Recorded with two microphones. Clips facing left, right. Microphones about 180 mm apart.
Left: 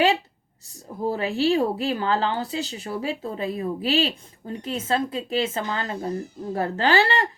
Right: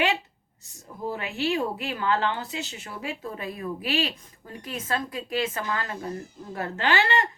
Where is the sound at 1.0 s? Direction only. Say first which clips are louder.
Left 6 dB; 35° left (ahead or behind).